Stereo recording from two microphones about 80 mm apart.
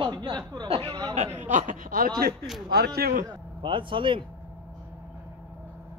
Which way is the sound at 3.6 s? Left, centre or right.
Right.